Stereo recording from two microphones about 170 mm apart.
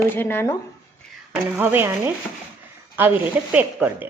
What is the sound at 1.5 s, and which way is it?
Speech, 10° right (ahead or behind).